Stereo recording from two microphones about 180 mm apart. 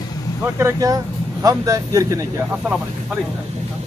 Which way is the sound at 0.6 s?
15° right (ahead or behind).